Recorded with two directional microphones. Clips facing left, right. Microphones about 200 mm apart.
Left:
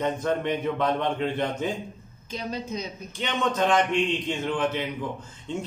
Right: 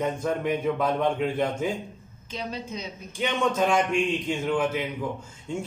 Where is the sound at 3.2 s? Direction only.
10° right (ahead or behind).